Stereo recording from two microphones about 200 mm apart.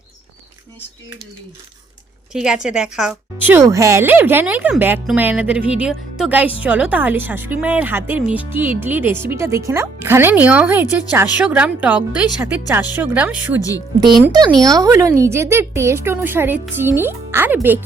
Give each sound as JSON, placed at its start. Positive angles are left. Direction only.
{"t": 2.3, "sound": "speech", "side_deg": -5}
{"t": 13.6, "sound": "speech", "side_deg": 15}
{"t": 14.6, "sound": "speech", "side_deg": -15}